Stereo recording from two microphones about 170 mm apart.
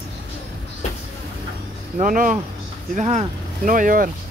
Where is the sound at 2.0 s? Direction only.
50° right (ahead or behind).